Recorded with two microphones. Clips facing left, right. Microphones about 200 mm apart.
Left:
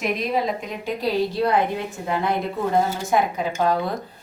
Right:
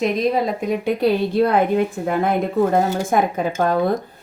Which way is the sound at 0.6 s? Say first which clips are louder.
Right 8 dB; 60° right (ahead or behind).